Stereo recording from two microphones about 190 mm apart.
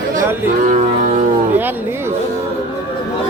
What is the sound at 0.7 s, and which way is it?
Music, 35° right (ahead or behind).